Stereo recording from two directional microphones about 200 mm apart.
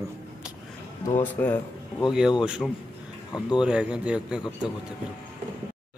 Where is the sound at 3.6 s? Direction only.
5° right (ahead or behind).